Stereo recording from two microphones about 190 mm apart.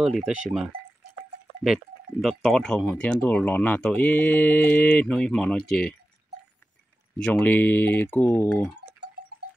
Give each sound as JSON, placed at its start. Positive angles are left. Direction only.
{"t": 0.0, "sound": "speech", "side_deg": -5}
{"t": 2.2, "sound": "speech", "side_deg": 0}
{"t": 7.2, "sound": "speech", "side_deg": 5}